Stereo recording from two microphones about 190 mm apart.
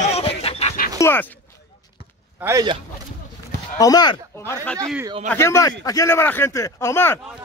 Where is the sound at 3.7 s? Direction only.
20° left (ahead or behind).